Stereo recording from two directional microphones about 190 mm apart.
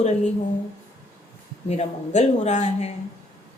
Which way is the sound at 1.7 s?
35° left (ahead or behind).